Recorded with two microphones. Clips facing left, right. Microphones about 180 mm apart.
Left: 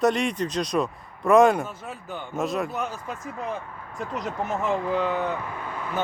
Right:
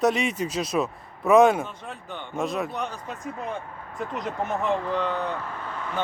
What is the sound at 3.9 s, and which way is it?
Speech, centre (ahead or behind).